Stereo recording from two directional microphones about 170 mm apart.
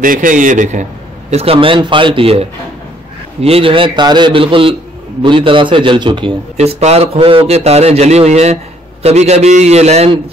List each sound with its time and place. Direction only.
0.0 s a man's voice: 50° right (ahead or behind)
1.3 s a man's voice: 35° right (ahead or behind)